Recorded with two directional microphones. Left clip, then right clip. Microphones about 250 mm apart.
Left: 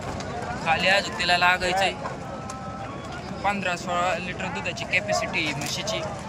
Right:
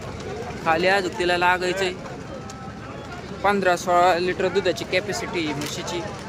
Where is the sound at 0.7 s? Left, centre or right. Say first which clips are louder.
Right 2 dB; centre.